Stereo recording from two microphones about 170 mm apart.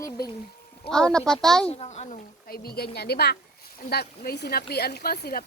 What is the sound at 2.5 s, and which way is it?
Speech, 65° left (ahead or behind).